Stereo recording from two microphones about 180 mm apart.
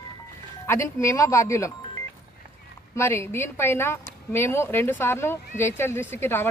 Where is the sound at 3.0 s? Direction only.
15° left (ahead or behind).